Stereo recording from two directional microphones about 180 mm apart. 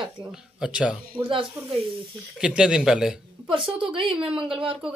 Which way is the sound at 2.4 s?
5° right (ahead or behind).